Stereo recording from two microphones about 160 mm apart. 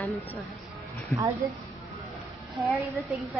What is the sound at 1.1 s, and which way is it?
Speech, 15° left (ahead or behind).